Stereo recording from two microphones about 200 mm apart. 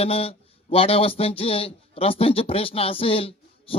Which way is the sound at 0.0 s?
30° left (ahead or behind).